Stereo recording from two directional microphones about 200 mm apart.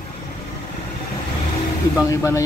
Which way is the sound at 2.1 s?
15° left (ahead or behind).